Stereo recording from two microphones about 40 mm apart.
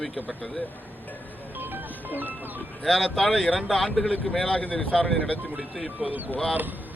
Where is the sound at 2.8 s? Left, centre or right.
Centre.